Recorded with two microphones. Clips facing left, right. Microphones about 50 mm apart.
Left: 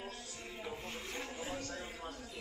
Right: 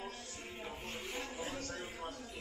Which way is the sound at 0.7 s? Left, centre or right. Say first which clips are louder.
Left 1 dB; centre.